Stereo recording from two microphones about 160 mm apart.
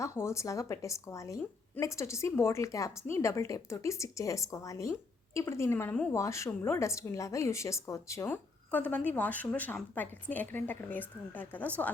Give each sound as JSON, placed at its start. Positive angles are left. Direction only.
{"t": 0.0, "sound": "a woman's voice", "side_deg": 20}